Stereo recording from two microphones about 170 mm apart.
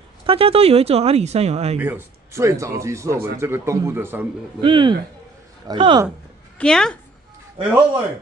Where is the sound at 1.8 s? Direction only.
10° right (ahead or behind).